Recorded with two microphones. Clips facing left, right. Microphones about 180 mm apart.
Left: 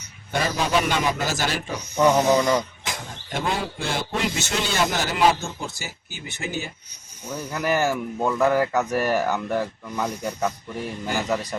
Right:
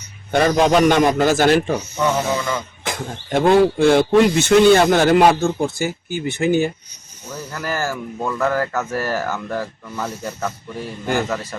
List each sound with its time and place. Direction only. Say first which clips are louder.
0.3 s speech: right 9 dB; 60° right (ahead or behind)
2.0 s speech: left 5 dB; 15° left (ahead or behind)
2.8 s speech: right 7 dB; 55° right (ahead or behind)
7.3 s speech: left 2 dB; 10° left (ahead or behind)